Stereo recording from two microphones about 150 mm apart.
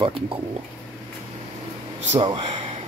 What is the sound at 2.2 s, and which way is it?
Speech, 35° right (ahead or behind).